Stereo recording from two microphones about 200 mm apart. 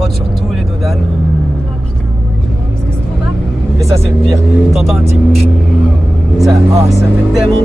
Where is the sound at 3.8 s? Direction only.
15° right (ahead or behind).